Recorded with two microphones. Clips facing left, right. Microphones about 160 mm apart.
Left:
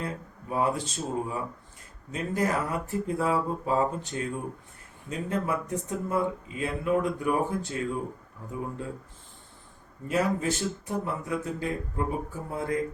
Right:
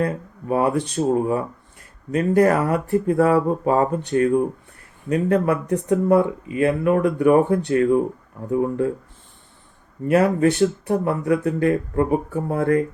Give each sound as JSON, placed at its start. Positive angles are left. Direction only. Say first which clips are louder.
{"t": 0.0, "sound": "speech", "louder": "right 11 dB", "side_deg": -65}
{"t": 10.1, "sound": "speech", "louder": "right 10 dB", "side_deg": -65}